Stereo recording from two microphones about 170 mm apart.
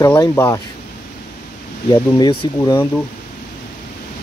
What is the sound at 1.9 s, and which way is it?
Speech, 25° left (ahead or behind).